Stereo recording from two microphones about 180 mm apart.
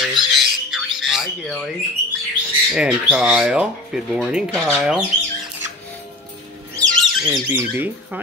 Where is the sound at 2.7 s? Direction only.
5° right (ahead or behind).